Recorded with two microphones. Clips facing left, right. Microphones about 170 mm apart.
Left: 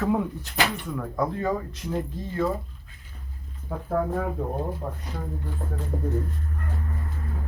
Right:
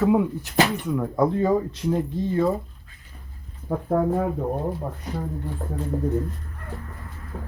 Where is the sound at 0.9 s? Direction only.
25° right (ahead or behind).